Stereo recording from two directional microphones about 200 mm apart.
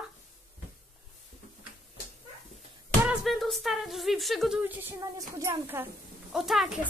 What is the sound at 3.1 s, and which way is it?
Speech, centre (ahead or behind).